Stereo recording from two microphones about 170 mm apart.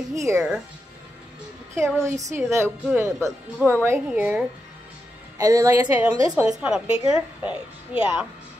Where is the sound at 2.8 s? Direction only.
5° right (ahead or behind).